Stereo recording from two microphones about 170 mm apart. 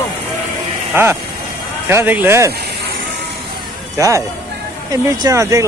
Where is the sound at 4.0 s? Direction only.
20° right (ahead or behind).